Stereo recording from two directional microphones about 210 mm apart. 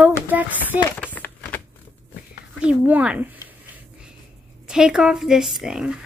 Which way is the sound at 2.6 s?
5° right (ahead or behind).